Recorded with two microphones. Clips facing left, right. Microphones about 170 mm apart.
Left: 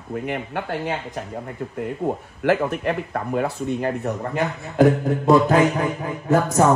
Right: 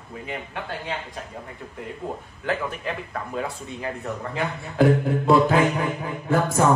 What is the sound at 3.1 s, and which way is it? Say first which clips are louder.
Speech: left 6 dB; 50° left (ahead or behind).